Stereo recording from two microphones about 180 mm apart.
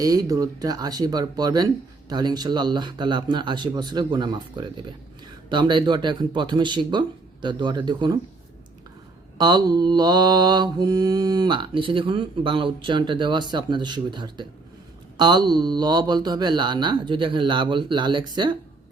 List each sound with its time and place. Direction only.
0.0 s mantra: 20° right (ahead or behind)
9.4 s mantra: 25° right (ahead or behind)